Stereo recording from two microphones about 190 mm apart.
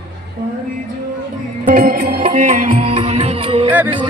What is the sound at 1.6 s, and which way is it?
Music, 45° right (ahead or behind).